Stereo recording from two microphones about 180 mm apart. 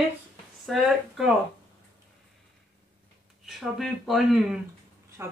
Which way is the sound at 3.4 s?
Centre (ahead or behind).